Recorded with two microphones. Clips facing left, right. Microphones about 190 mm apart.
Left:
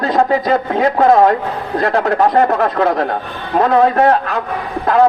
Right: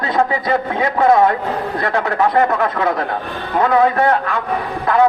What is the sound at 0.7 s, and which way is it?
A man's voice, 40° left (ahead or behind).